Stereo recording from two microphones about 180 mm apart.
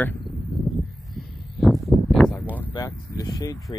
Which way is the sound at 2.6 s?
20° left (ahead or behind).